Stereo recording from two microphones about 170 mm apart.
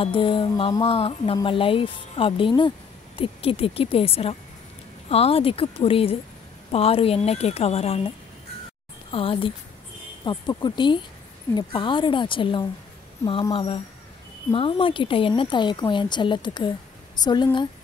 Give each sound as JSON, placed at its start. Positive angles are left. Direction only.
{"t": 0.0, "sound": "speech", "side_deg": 30}
{"t": 9.1, "sound": "speech", "side_deg": 30}